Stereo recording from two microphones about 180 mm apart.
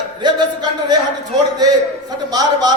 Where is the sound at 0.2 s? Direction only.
25° right (ahead or behind).